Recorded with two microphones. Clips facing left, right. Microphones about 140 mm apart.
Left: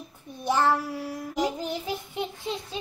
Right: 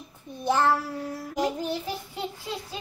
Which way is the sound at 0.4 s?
15° left (ahead or behind).